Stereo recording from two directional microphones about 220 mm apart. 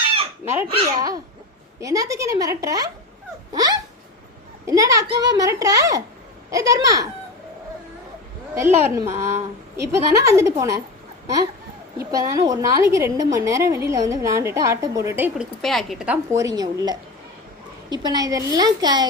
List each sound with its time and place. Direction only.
0.4 s a woman's voice: 10° right (ahead or behind)
8.8 s a woman's voice: 15° right (ahead or behind)
11.9 s a woman's voice: 15° right (ahead or behind)
16.3 s a woman's voice: 15° right (ahead or behind)